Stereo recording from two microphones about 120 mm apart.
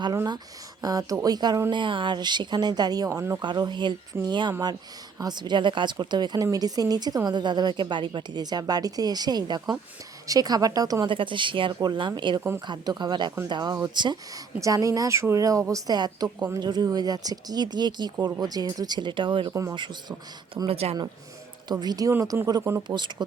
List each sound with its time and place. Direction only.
0.8 s speech: 30° right (ahead or behind)
3.4 s speech: 40° right (ahead or behind)
11.1 s speech: 45° right (ahead or behind)
12.4 s speech: 20° right (ahead or behind)
12.6 s speech: 35° right (ahead or behind)
14.6 s speech: 25° right (ahead or behind)
20.7 s speech: 55° right (ahead or behind)
21.7 s speech: 35° right (ahead or behind)
23.0 s speech: 40° right (ahead or behind)